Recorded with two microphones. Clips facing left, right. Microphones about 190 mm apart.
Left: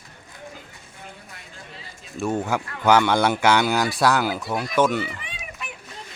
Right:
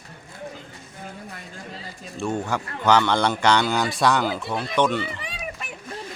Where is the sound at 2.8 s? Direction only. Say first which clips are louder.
Left 2 dB; 10° left (ahead or behind).